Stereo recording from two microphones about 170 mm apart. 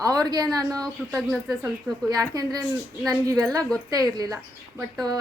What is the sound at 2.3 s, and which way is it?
A woman's voice, 25° right (ahead or behind).